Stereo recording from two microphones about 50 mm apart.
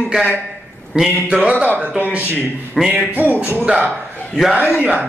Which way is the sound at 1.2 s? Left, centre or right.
Right.